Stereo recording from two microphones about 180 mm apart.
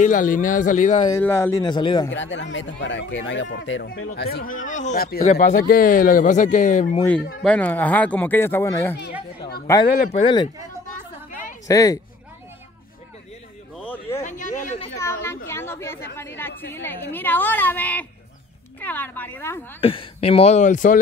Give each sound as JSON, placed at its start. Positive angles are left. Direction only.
{"t": 0.0, "sound": "speech", "side_deg": 45}
{"t": 1.2, "sound": "speech", "side_deg": 10}
{"t": 1.6, "sound": "speech", "side_deg": 25}
{"t": 2.0, "sound": "speech", "side_deg": 90}
{"t": 3.9, "sound": "speech", "side_deg": 60}
{"t": 5.3, "sound": "speech", "side_deg": 45}
{"t": 7.4, "sound": "speech", "side_deg": 10}
{"t": 10.1, "sound": "speech", "side_deg": 25}
{"t": 11.6, "sound": "speech", "side_deg": 20}
{"t": 14.2, "sound": "a sound", "side_deg": 45}
{"t": 15.0, "sound": "chatter", "side_deg": 15}
{"t": 17.1, "sound": "speech", "side_deg": 10}
{"t": 19.8, "sound": "speech", "side_deg": 30}